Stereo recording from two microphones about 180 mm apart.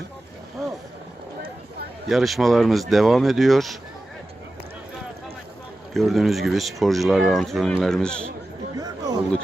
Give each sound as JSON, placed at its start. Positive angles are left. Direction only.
{"t": 2.0, "sound": "speech", "side_deg": 0}
{"t": 5.9, "sound": "speech", "side_deg": 0}
{"t": 8.7, "sound": "chatter", "side_deg": -20}